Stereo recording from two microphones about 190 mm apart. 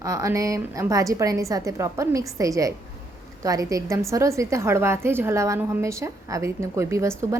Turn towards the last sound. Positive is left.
turn(degrees=-15)  # may be behind; listen again after turning